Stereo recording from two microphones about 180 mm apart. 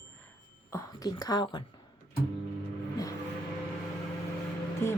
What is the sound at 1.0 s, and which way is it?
Speech, 20° left (ahead or behind).